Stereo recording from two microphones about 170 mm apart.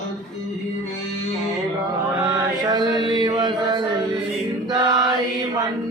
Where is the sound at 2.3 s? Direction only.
25° right (ahead or behind).